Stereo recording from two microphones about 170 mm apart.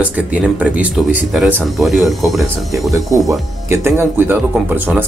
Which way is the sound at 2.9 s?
20° right (ahead or behind).